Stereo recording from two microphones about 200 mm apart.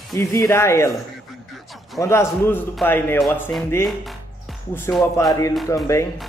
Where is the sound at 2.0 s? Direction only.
15° left (ahead or behind).